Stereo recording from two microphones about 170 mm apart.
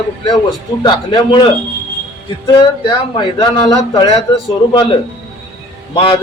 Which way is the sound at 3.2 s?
25° left (ahead or behind).